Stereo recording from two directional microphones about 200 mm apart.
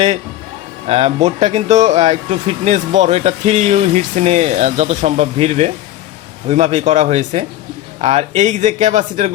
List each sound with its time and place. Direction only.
0.9 s speech: 30° right (ahead or behind)